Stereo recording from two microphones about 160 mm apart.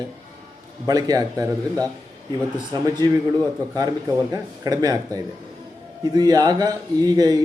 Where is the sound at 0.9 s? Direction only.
25° right (ahead or behind).